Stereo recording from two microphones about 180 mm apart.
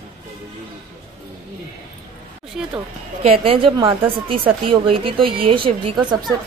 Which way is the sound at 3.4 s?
30° right (ahead or behind).